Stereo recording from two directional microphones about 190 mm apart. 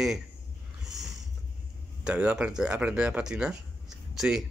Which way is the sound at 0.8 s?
Centre (ahead or behind).